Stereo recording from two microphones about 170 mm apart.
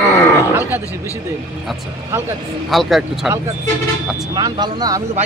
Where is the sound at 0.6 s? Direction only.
10° right (ahead or behind).